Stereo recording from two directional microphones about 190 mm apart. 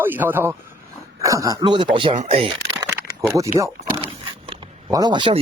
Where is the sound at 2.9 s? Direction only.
15° right (ahead or behind).